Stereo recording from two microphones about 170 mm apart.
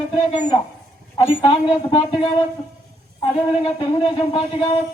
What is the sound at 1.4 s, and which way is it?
Speech, 25° left (ahead or behind).